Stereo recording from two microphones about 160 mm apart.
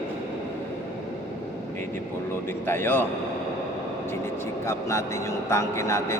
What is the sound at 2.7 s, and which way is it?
Speech, 15° left (ahead or behind).